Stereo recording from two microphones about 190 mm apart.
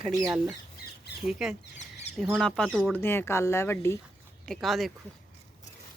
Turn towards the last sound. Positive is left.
turn(degrees=0)  # may be behind; listen again after turning